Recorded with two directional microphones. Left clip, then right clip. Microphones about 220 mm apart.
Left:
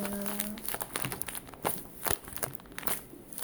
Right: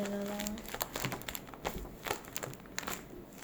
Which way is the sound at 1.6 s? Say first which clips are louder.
Left 4 dB; 25° left (ahead or behind).